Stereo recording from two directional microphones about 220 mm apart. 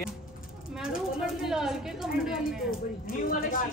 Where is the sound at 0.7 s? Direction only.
5° right (ahead or behind).